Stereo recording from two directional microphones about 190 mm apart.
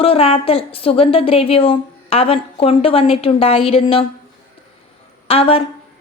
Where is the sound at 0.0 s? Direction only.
30° left (ahead or behind).